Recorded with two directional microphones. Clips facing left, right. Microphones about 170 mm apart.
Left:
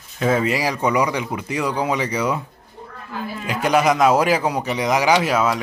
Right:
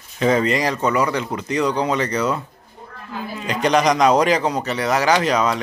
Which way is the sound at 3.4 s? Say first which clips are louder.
Even; 5° left (ahead or behind).